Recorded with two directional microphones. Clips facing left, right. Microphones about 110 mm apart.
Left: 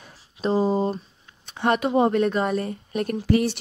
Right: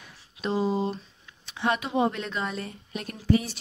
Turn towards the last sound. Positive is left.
turn(degrees=70)  # may be behind; listen again after turning